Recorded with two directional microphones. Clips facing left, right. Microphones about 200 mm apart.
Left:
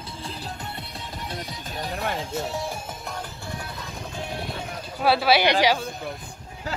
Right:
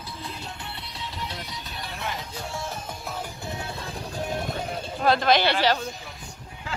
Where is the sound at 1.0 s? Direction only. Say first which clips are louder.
Even; 50° left (ahead or behind).